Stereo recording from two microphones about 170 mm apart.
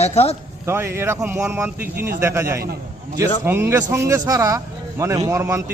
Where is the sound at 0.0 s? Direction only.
35° left (ahead or behind).